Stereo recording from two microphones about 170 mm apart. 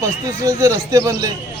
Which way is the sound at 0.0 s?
20° right (ahead or behind).